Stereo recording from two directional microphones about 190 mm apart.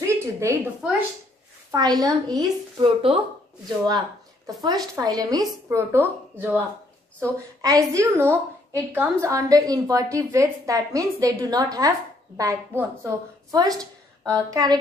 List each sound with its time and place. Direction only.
0.0 s a sound: 15° right (ahead or behind)
0.8 s a woman's voice: 5° right (ahead or behind)
1.7 s a woman's voice: 20° right (ahead or behind)
7.6 s a woman's voice: 15° right (ahead or behind)